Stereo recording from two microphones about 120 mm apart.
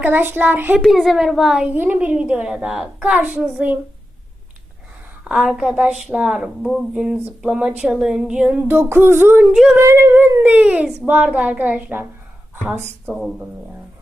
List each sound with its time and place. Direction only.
0.0 s a woman's voice: 15° right (ahead or behind)
0.8 s a woman's voice: centre (ahead or behind)
5.2 s a woman's voice: 5° right (ahead or behind)
6.9 s a woman's voice: 10° right (ahead or behind)